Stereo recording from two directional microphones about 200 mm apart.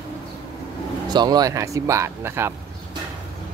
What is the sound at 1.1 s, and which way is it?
Speech, 20° right (ahead or behind).